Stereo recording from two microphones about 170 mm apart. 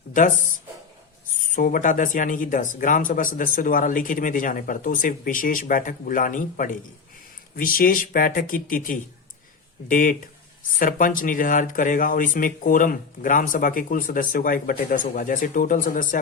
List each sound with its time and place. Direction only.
0.1 s speech: 50° left (ahead or behind)
1.5 s speech: 50° left (ahead or behind)